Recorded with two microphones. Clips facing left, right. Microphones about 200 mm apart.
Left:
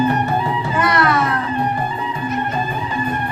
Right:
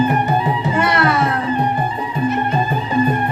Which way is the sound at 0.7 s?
25° right (ahead or behind).